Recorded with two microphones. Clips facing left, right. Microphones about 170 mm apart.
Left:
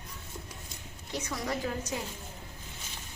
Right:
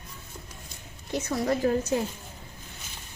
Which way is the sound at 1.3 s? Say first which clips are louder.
Right 9 dB; 45° right (ahead or behind).